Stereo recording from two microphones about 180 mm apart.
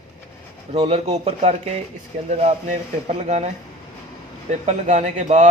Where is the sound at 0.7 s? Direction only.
35° right (ahead or behind).